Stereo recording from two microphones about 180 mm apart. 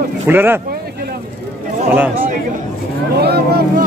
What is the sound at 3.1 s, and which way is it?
Speech, 65° right (ahead or behind).